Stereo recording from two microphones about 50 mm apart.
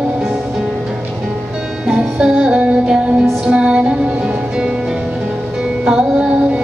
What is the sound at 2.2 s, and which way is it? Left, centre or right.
Music, centre.